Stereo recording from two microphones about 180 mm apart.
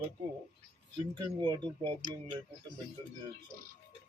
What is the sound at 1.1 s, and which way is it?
Speech, 25° right (ahead or behind).